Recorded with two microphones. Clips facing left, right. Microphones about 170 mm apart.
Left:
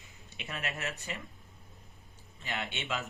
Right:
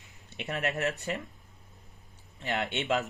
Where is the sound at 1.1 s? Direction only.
55° right (ahead or behind).